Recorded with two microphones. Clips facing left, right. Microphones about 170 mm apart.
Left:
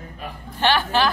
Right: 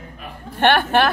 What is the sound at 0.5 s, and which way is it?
Speech, 60° right (ahead or behind).